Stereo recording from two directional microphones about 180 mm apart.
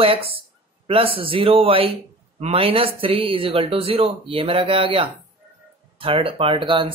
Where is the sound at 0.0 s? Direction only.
30° right (ahead or behind).